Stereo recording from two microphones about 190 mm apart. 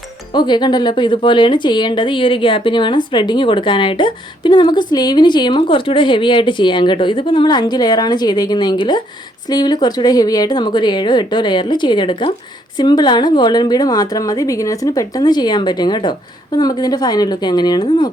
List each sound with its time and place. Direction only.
0.3 s a woman's voice: 25° left (ahead or behind)